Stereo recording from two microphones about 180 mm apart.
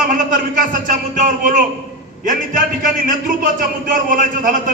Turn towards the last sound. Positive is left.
turn(degrees=-50)  # may be behind; listen again after turning